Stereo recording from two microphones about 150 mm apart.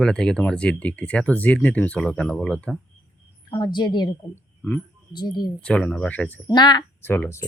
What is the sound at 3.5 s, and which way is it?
Speech, 30° left (ahead or behind).